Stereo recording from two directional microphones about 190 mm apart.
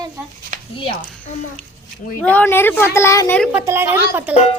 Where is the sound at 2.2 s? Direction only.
10° left (ahead or behind).